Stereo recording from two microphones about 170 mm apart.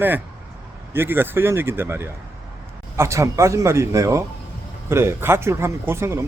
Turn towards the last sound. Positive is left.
turn(degrees=-15)  # may be behind; listen again after turning